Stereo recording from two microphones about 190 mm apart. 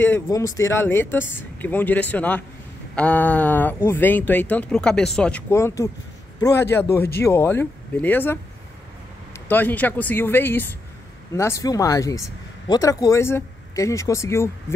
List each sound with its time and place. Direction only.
0.0 s speech: 15° left (ahead or behind)
9.5 s speech: 10° left (ahead or behind)